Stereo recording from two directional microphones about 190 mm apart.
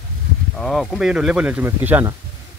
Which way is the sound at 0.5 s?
5° left (ahead or behind).